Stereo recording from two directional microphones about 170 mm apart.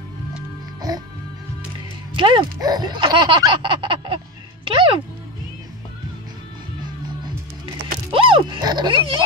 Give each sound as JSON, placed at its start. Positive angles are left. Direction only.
{"t": 2.1, "sound": "speech", "side_deg": -30}
{"t": 4.6, "sound": "music", "side_deg": -30}
{"t": 8.1, "sound": "a sound", "side_deg": -30}